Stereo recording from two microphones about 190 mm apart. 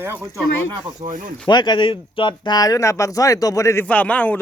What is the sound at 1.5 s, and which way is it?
Speech, 25° left (ahead or behind).